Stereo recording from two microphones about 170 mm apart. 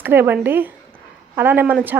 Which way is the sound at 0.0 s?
10° right (ahead or behind).